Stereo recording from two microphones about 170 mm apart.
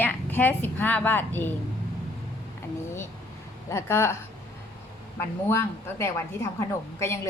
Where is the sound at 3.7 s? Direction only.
15° left (ahead or behind).